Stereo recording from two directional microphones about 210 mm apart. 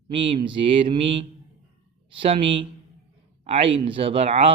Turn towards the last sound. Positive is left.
turn(degrees=-30)  # may be behind; listen again after turning